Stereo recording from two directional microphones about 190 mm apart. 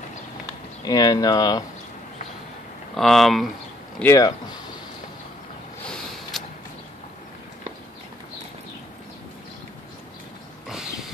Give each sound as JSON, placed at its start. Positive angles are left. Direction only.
{"t": 0.8, "sound": "speech", "side_deg": 20}
{"t": 2.9, "sound": "speech", "side_deg": 0}
{"t": 4.0, "sound": "speech", "side_deg": 15}
{"t": 5.9, "sound": "a sound", "side_deg": 0}